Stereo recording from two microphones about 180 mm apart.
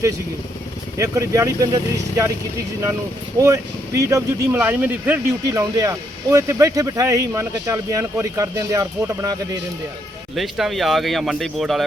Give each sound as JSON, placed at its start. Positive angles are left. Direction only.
{"t": 0.9, "sound": "speech", "side_deg": -15}
{"t": 3.3, "sound": "speech", "side_deg": -20}
{"t": 10.3, "sound": "speech", "side_deg": 0}